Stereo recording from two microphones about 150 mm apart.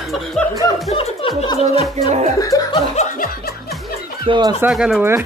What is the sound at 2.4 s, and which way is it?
Laughter, 20° left (ahead or behind).